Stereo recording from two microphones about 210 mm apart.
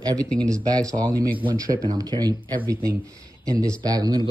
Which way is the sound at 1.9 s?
20° right (ahead or behind).